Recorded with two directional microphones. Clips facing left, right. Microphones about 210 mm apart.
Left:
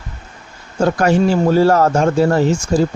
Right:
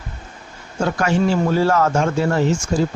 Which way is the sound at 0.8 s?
40° left (ahead or behind).